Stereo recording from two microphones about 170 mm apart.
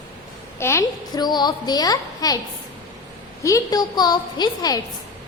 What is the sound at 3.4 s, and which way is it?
A child's voice, 20° left (ahead or behind).